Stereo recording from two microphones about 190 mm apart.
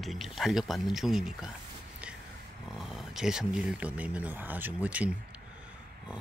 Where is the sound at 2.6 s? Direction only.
Centre (ahead or behind).